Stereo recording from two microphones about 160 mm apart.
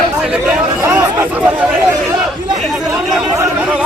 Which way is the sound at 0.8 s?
15° right (ahead or behind).